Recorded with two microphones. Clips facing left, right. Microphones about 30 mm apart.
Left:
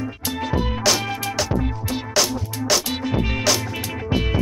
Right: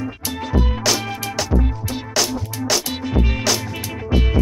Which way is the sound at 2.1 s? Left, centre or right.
Centre.